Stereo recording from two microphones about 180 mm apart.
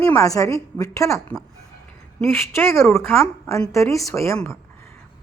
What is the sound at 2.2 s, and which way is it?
Speech, 15° left (ahead or behind).